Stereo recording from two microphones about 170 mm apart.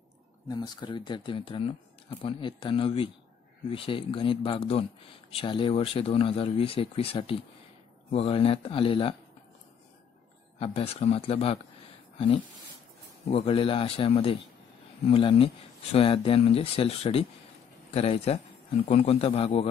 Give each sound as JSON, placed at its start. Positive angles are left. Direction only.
{"t": 0.5, "sound": "speech", "side_deg": 25}
{"t": 10.6, "sound": "speech", "side_deg": 35}
{"t": 13.3, "sound": "speech", "side_deg": 30}